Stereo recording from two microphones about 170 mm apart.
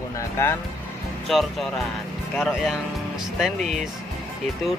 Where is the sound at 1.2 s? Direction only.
Centre (ahead or behind).